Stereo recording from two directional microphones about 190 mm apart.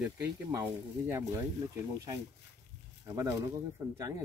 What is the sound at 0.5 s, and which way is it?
Speech, 15° right (ahead or behind).